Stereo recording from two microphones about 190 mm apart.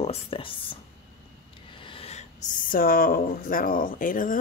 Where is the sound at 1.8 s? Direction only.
30° left (ahead or behind).